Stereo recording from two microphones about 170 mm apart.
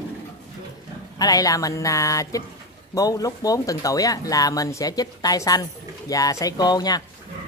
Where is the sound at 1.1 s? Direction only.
20° left (ahead or behind).